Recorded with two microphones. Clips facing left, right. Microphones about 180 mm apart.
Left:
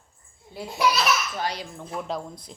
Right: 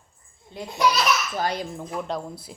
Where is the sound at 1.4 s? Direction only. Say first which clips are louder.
Right 4 dB; 50° right (ahead or behind).